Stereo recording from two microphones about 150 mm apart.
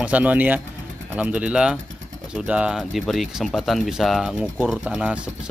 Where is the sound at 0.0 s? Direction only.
10° right (ahead or behind).